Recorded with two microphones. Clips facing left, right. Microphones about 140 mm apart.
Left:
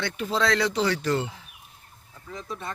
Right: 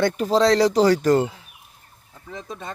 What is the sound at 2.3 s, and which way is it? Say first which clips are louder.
Speech: right 1 dB; 25° right (ahead or behind).